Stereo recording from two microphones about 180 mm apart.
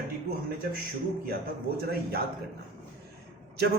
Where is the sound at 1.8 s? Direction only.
60° right (ahead or behind).